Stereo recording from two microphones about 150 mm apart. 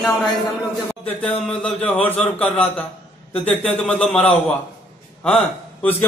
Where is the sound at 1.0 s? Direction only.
40° left (ahead or behind).